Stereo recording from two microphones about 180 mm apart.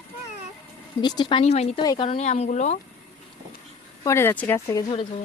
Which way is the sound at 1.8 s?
25° left (ahead or behind).